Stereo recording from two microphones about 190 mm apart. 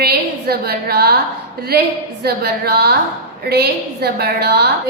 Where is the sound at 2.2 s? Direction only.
55° right (ahead or behind).